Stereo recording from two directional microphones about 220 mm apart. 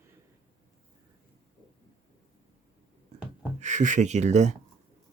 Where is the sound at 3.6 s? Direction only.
35° right (ahead or behind).